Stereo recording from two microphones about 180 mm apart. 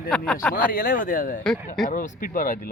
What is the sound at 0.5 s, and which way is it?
Speech, 50° left (ahead or behind).